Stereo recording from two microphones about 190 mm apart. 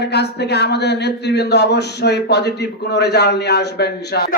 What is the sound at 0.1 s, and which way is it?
Speech, 60° left (ahead or behind).